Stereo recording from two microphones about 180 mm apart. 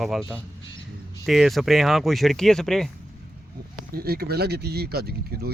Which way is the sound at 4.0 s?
60° right (ahead or behind).